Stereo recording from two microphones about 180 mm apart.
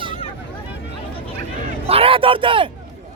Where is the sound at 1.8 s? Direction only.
30° right (ahead or behind).